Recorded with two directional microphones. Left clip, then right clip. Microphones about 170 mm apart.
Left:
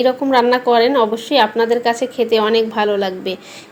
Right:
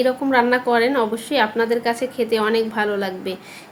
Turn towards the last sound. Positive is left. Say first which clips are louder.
# left 5 dB
turn(degrees=15)  # may be behind; listen again after turning